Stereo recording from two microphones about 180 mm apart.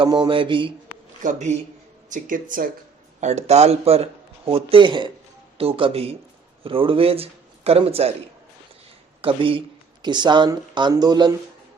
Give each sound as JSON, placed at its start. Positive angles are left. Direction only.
{"t": 0.0, "sound": "speech", "side_deg": -25}
{"t": 1.2, "sound": "speech", "side_deg": -40}
{"t": 9.2, "sound": "speech", "side_deg": -30}